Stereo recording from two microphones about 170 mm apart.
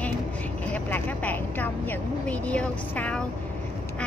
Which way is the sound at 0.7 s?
10° left (ahead or behind).